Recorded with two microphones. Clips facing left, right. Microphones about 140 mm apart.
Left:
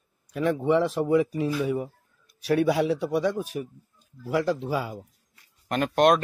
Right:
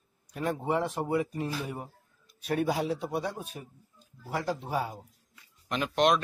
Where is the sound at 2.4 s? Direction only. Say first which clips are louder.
Left 6 dB; 80° left.